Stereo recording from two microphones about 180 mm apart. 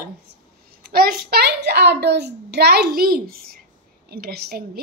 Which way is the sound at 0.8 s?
55° right (ahead or behind).